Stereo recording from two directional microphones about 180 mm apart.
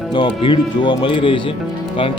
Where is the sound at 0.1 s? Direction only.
25° left (ahead or behind).